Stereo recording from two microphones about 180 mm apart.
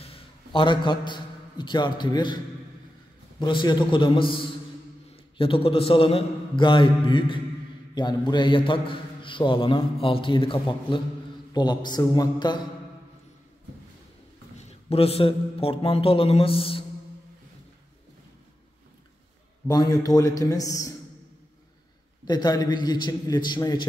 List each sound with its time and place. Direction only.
0.0 s a man's voice: 30° left (ahead or behind)
14.6 s a man's voice: 35° left (ahead or behind)
19.7 s a man's voice: 20° left (ahead or behind)
22.2 s a man's voice: 20° left (ahead or behind)